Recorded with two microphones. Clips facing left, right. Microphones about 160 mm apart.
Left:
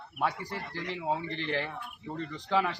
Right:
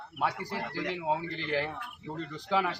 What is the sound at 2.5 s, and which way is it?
Speech, 10° right (ahead or behind).